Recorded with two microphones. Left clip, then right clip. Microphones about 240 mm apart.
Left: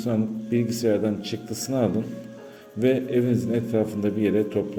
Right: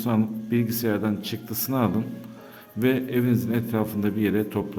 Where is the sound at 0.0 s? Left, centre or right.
Right.